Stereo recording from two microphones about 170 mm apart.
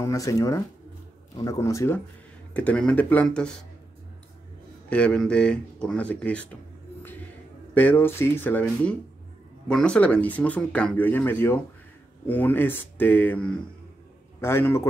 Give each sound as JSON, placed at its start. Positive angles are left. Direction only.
{"t": 0.0, "sound": "speech", "side_deg": 20}
{"t": 4.8, "sound": "speech", "side_deg": 5}
{"t": 7.7, "sound": "speech", "side_deg": 10}